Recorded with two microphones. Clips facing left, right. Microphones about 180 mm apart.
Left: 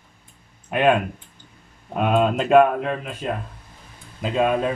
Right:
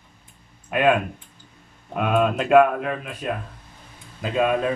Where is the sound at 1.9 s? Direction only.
25° left (ahead or behind).